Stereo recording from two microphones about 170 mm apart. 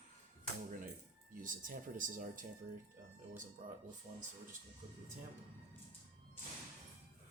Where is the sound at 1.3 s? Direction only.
50° right (ahead or behind).